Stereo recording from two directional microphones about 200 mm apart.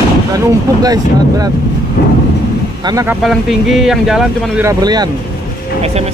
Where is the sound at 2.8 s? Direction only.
15° right (ahead or behind).